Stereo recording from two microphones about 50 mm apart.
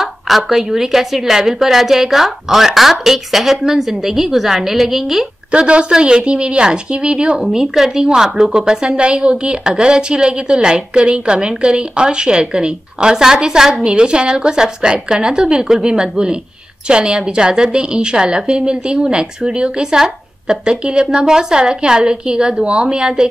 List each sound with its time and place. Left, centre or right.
0.0 s a woman's voice: centre
5.5 s a woman's voice: right